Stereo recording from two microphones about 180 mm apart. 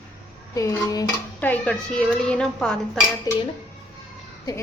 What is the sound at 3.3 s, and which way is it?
Speech, 20° left (ahead or behind).